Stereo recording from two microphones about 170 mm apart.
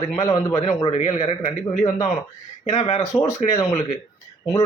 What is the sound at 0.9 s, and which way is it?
Speech, 40° left (ahead or behind).